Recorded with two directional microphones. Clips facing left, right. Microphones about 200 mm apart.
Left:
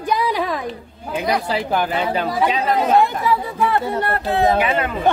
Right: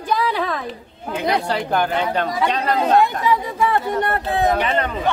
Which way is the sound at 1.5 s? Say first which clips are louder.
Even; 5° left (ahead or behind).